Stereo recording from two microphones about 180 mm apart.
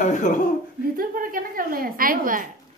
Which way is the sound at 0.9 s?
50° right (ahead or behind).